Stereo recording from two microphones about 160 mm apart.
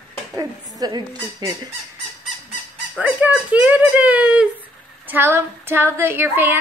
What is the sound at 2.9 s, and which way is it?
A woman's voice, 5° right (ahead or behind).